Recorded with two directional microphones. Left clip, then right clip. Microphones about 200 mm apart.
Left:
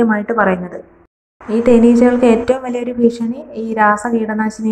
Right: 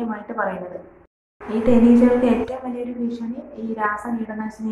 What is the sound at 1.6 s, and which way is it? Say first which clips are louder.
A woman's voice: left 6 dB; 40° left (ahead or behind).